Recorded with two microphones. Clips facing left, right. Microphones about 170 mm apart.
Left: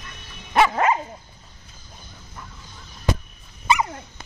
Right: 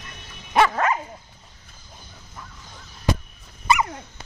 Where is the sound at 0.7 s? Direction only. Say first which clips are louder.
Left 2 dB; 20° left (ahead or behind).